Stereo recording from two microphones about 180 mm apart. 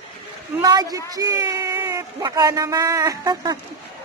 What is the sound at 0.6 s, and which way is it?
A man's voice, 20° right (ahead or behind).